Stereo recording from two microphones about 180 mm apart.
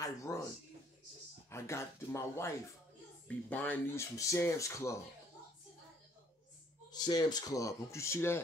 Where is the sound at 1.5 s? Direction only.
15° left (ahead or behind).